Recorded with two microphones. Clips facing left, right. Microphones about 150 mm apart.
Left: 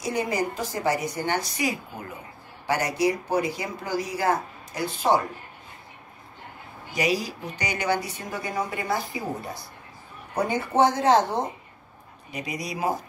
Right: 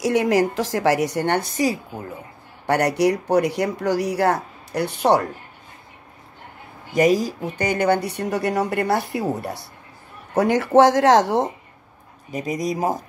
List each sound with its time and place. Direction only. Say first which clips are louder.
0.0 s a woman's voice: right 8 dB; 90° right; by 1.5 s 65° right (ahead or behind)
1.6 s speech: right 6 dB; 35° right (ahead or behind)
2.6 s speech: right 5 dB; 65° right (ahead or behind)
6.9 s speech: right 8 dB; 50° right (ahead or behind); by 9.7 s 75° right (ahead or behind)
10.3 s speech: right 8 dB; 90° right
12.3 s speech: right 8 dB; 45° right (ahead or behind)